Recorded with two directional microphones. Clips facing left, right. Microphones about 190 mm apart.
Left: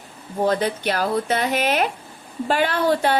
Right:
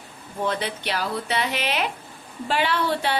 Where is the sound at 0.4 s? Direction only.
40° left (ahead or behind).